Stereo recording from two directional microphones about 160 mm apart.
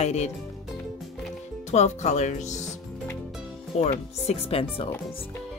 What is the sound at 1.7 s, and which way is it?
Speech, 45° left (ahead or behind).